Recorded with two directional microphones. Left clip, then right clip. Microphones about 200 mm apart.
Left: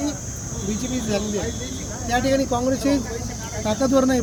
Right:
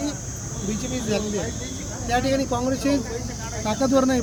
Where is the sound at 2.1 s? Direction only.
Centre (ahead or behind).